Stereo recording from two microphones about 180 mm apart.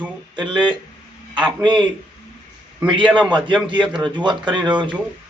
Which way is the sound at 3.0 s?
5° left (ahead or behind).